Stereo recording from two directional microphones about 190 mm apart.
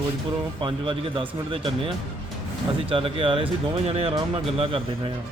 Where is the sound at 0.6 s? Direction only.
25° right (ahead or behind).